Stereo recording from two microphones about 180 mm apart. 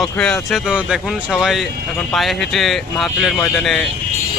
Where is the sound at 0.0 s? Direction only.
5° left (ahead or behind).